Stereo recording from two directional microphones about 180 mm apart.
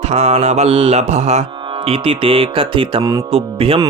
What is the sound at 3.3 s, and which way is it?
Speech, 30° right (ahead or behind).